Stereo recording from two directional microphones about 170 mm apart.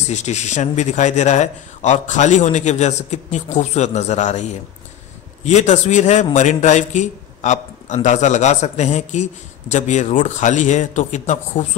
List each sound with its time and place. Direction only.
0.1 s a man's voice: 45° left (ahead or behind)